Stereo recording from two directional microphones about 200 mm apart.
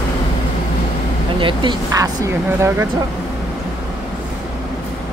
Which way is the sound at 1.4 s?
25° right (ahead or behind).